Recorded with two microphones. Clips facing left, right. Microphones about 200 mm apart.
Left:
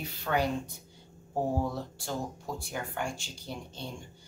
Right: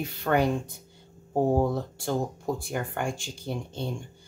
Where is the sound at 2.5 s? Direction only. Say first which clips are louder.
Right 5 dB; 55° right (ahead or behind).